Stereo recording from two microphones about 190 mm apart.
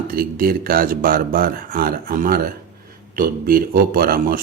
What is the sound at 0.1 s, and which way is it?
A man's voice, 50° right (ahead or behind).